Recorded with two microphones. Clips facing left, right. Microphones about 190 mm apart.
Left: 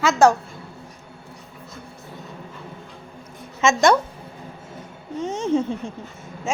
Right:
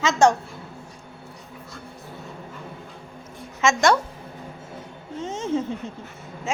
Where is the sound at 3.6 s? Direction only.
20° left (ahead or behind).